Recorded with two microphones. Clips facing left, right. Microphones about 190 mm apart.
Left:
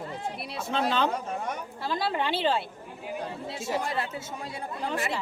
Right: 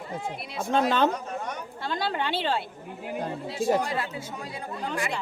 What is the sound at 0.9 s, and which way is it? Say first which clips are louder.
Speech: right 2 dB; 50° right (ahead or behind).